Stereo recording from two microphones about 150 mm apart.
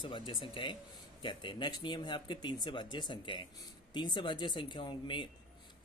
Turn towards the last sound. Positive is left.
turn(degrees=35)  # may be behind; listen again after turning